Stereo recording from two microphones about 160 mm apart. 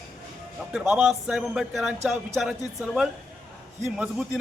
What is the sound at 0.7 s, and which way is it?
A man's voice, 5° right (ahead or behind).